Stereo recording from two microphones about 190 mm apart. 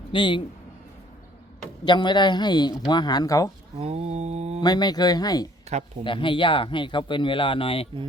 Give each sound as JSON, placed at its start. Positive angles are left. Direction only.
{"t": 0.1, "sound": "speech", "side_deg": 25}
{"t": 1.8, "sound": "speech", "side_deg": 25}
{"t": 3.8, "sound": "mantra", "side_deg": -35}
{"t": 4.6, "sound": "speech", "side_deg": 20}
{"t": 5.6, "sound": "speech", "side_deg": -35}
{"t": 6.1, "sound": "speech", "side_deg": 25}